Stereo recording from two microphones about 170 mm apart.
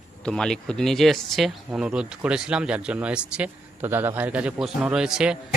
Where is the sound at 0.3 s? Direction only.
5° left (ahead or behind).